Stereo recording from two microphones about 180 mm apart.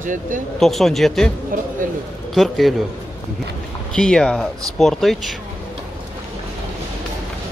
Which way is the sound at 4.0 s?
5° left (ahead or behind).